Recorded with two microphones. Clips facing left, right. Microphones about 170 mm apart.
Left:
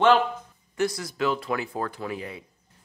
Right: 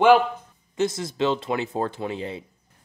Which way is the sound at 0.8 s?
25° right (ahead or behind).